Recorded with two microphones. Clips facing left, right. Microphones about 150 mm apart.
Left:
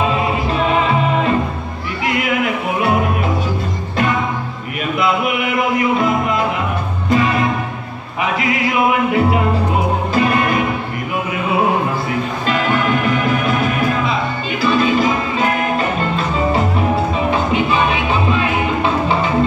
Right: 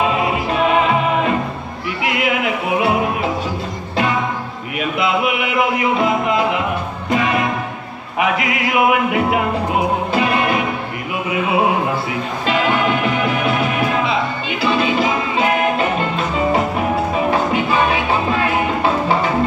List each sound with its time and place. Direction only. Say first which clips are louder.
0.5 s music: right 2 dB; 35° left (ahead or behind)
4.9 s chant: left 1 dB; 45° left (ahead or behind)
7.1 s music: left 2 dB; 35° left (ahead or behind)
10.1 s music: left 3 dB; 45° left (ahead or behind)
12.4 s music: right 2 dB; 45° left (ahead or behind)
14.6 s music: left 2 dB; 40° left (ahead or behind)
17.3 s music: left 1 dB; 20° left (ahead or behind)